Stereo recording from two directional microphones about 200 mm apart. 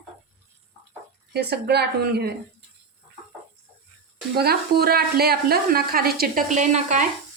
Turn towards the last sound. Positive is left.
turn(degrees=-40)  # may be behind; listen again after turning